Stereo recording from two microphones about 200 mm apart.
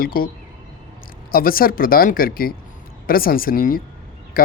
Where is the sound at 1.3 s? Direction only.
45° left (ahead or behind).